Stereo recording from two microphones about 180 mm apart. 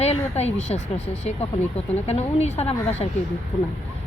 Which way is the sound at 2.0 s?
35° left (ahead or behind).